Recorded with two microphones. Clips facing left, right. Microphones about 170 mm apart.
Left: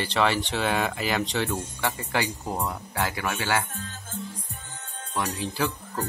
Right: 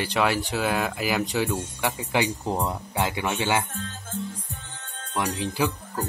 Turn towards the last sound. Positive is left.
turn(degrees=-15)  # may be behind; listen again after turning